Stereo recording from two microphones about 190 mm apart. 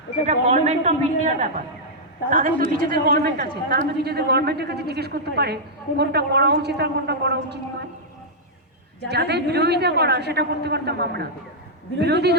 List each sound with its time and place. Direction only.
0.3 s a woman's voice: 35° right (ahead or behind); by 7.6 s 60° right (ahead or behind)
9.0 s a woman's voice: 60° right (ahead or behind)